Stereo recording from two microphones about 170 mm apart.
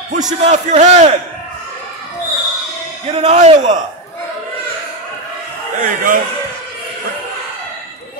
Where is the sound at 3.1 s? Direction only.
40° right (ahead or behind).